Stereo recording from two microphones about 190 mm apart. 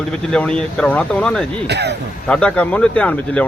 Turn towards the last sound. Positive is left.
turn(degrees=5)  # may be behind; listen again after turning